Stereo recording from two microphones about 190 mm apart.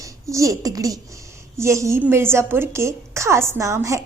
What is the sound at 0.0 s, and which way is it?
A woman's voice, 15° right (ahead or behind).